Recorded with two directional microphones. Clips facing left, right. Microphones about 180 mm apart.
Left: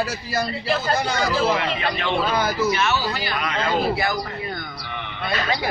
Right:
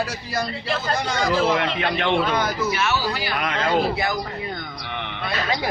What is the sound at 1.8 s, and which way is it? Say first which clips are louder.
Speech: right 2 dB; 60° right (ahead or behind).